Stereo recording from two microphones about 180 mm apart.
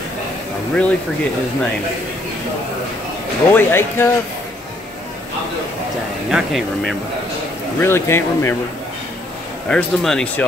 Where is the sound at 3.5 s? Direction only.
10° left (ahead or behind).